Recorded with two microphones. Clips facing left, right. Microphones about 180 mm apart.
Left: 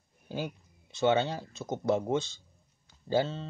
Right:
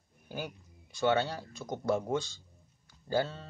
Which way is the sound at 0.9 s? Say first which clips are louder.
Left 2 dB; 20° left (ahead or behind).